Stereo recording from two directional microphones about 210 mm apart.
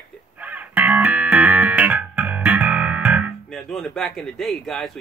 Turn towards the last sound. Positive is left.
turn(degrees=0)  # may be behind; listen again after turning